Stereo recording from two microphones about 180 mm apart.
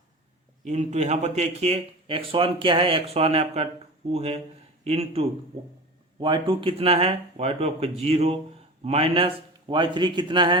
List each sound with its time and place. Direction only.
0.6 s a man's voice: 40° right (ahead or behind)